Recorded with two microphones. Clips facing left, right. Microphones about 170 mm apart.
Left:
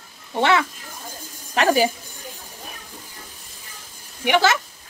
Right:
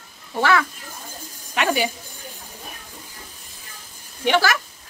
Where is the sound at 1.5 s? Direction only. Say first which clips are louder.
Left 4 dB; 40° left (ahead or behind).